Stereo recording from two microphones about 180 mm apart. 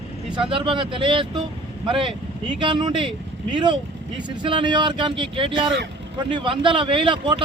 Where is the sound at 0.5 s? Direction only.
30° right (ahead or behind).